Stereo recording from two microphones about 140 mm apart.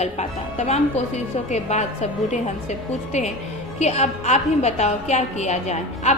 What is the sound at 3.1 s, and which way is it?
A woman's voice, 50° left (ahead or behind).